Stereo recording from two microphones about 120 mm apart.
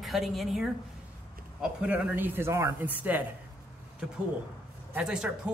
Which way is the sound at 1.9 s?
15° right (ahead or behind).